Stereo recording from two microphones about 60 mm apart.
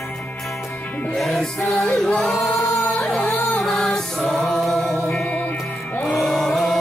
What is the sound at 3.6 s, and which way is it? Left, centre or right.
Music, centre.